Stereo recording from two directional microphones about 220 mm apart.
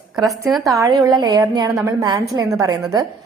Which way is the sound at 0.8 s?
15° right (ahead or behind).